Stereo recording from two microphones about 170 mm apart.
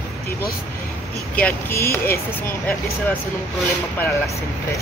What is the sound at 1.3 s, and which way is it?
Speech, 10° left (ahead or behind).